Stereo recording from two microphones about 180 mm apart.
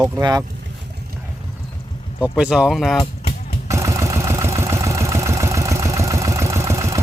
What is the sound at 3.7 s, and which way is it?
Vehicle, 15° right (ahead or behind).